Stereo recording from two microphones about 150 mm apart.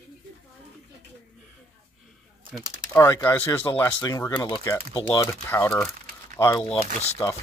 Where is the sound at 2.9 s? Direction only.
15° left (ahead or behind).